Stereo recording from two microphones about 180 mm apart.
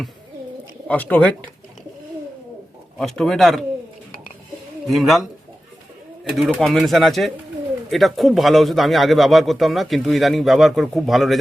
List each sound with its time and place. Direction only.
0.9 s speech: 10° left (ahead or behind)
3.0 s speech: centre (ahead or behind)
4.9 s speech: centre (ahead or behind)
6.3 s speech: centre (ahead or behind)